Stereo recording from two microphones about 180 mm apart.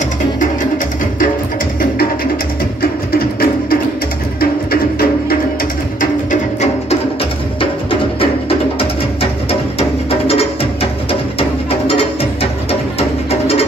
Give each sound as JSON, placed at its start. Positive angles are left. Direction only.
{"t": 2.8, "sound": "music", "side_deg": 55}
{"t": 5.9, "sound": "music", "side_deg": 40}
{"t": 7.9, "sound": "music", "side_deg": 30}